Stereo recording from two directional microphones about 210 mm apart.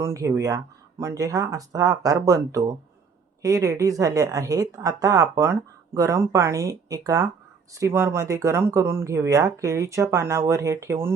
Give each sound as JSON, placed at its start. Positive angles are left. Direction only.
{"t": 0.0, "sound": "speech", "side_deg": -15}